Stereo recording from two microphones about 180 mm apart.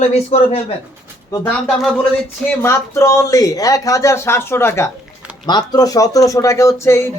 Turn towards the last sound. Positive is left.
turn(degrees=15)  # may be behind; listen again after turning